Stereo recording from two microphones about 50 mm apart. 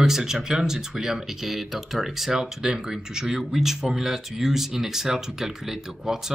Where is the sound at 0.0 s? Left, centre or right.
Centre.